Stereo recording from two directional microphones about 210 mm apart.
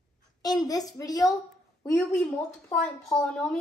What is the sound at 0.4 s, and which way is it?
A woman's voice, 15° left (ahead or behind).